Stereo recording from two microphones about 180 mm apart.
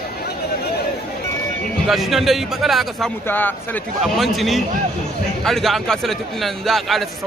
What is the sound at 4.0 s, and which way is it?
A man's voice, centre (ahead or behind).